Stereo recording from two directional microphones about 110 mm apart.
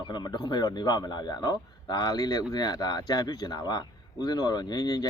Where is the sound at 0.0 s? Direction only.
40° left (ahead or behind).